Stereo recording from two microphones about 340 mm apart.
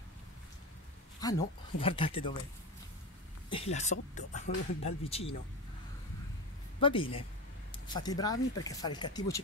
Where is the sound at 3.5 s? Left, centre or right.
Centre.